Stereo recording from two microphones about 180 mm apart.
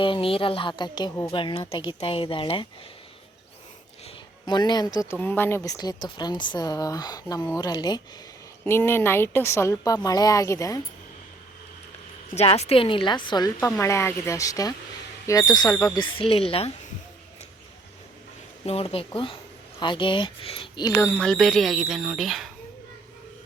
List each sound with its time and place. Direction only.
0.0 s speech: 30° left (ahead or behind)
4.0 s a woman's voice: 25° left (ahead or behind)
12.3 s speech: 35° left (ahead or behind)
13.6 s a woman's voice: 10° left (ahead or behind); by 16.7 s 35° left (ahead or behind)
18.6 s speech: 35° left (ahead or behind)
21.1 s speech: 5° left (ahead or behind)